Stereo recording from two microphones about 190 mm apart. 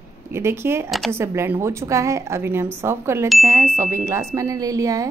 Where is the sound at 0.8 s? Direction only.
Centre (ahead or behind).